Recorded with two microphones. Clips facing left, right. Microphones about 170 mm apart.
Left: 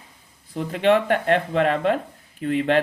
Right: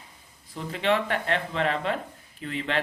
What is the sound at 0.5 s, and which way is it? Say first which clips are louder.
Speech: left 7 dB; 50° left (ahead or behind).